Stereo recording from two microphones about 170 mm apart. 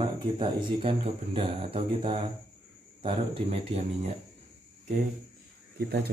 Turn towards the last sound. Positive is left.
turn(degrees=-70)  # may be behind; listen again after turning